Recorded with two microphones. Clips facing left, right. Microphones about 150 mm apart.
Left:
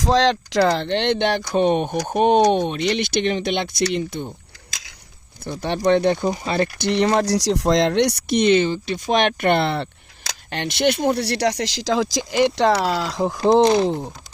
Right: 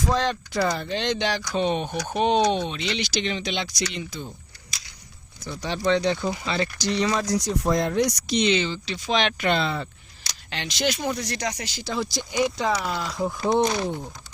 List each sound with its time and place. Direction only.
0.0 s speech: 90° left; by 4.3 s 55° left (ahead or behind)
5.4 s speech: 60° left (ahead or behind)
10.5 s speech: 55° left (ahead or behind); by 14.0 s 80° left